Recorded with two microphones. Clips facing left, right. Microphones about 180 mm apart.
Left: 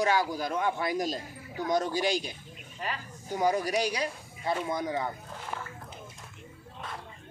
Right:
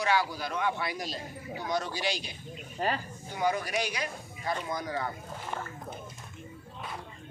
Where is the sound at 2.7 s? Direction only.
35° right (ahead or behind).